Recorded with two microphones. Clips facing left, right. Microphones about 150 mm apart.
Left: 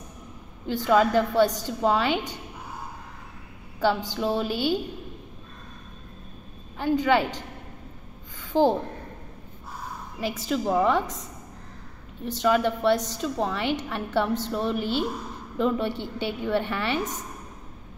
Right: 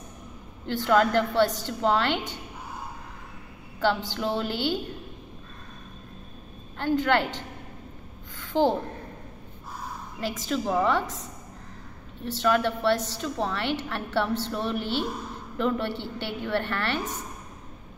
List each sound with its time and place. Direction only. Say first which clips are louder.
0.7 s a woman's voice: left 1 dB; 10° left (ahead or behind)
3.8 s a woman's voice: left 2 dB; 10° left (ahead or behind)
6.8 s a woman's voice: left 2 dB; 10° left (ahead or behind)
8.4 s a sound: left 2 dB; 15° left (ahead or behind)
10.5 s a woman's voice: left 2 dB; 10° left (ahead or behind)
12.3 s a woman's voice: left 1 dB; 15° left (ahead or behind)